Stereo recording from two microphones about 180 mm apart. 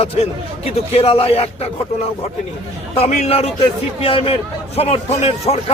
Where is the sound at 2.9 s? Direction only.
35° left (ahead or behind).